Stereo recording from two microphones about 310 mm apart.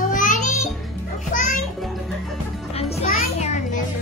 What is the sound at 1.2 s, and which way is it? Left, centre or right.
Children playing, left.